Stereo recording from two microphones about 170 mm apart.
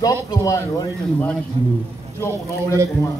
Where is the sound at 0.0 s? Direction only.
20° left (ahead or behind).